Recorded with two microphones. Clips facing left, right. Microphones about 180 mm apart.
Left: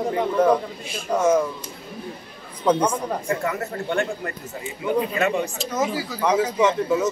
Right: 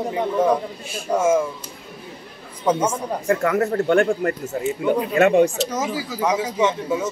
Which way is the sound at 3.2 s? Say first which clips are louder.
Right 6 dB; 60° right (ahead or behind).